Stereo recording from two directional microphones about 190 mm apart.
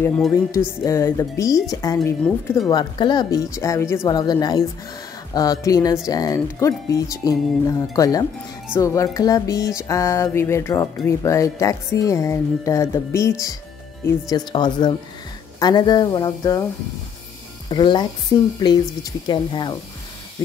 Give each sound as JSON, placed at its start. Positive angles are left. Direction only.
{"t": 0.5, "sound": "speech", "side_deg": 15}
{"t": 2.7, "sound": "speech", "side_deg": 25}
{"t": 17.6, "sound": "speech", "side_deg": 25}